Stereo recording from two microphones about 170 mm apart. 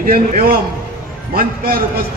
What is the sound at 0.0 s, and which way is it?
A man's voice, 60° right (ahead or behind).